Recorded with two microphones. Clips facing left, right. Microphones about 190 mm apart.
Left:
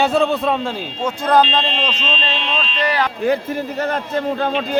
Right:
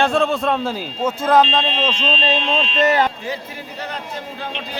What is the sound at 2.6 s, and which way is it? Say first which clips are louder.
Speech: right 3 dB; 25° right (ahead or behind).